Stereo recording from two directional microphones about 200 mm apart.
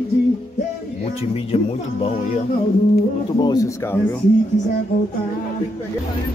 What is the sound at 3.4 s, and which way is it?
Speech, 20° left (ahead or behind).